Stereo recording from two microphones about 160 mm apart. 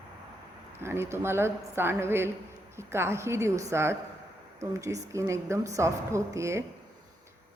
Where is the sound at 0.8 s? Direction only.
15° right (ahead or behind).